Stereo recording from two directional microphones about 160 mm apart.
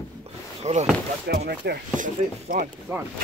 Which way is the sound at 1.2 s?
85° right.